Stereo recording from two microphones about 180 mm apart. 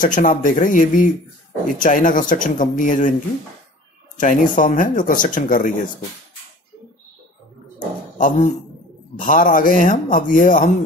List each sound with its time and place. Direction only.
0.0 s speech: 45° left (ahead or behind)
4.2 s speech: 45° left (ahead or behind)
9.2 s speech: 50° left (ahead or behind)